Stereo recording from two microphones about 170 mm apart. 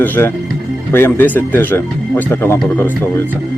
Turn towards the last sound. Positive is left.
turn(degrees=15)  # may be behind; listen again after turning